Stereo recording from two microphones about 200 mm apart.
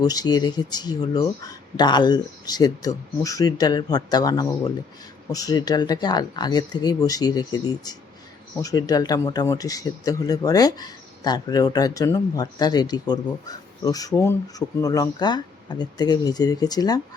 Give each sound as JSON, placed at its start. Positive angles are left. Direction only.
{"t": 0.0, "sound": "speech", "side_deg": 20}